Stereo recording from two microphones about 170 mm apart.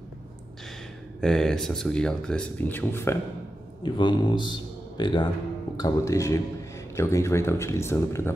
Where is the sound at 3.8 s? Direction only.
25° left (ahead or behind).